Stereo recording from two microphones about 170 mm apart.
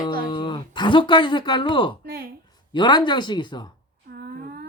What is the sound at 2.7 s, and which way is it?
Speech, 25° left (ahead or behind).